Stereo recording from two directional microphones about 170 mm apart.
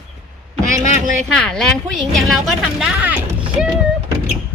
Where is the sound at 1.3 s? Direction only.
5° left (ahead or behind).